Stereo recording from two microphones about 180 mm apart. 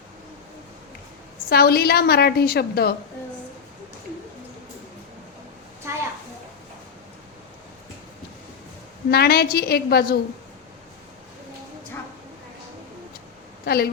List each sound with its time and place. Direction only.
1.5 s a woman's voice: 60° left (ahead or behind)
9.0 s a woman's voice: 60° left (ahead or behind)
13.7 s a woman's voice: 60° left (ahead or behind)